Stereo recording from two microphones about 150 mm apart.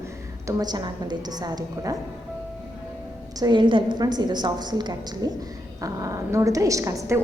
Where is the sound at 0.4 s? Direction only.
25° right (ahead or behind).